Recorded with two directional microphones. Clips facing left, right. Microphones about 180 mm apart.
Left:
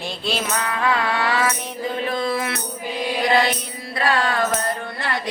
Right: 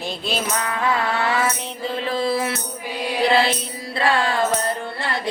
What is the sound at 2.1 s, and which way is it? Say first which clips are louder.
Speech: right 3 dB; 30° right (ahead or behind).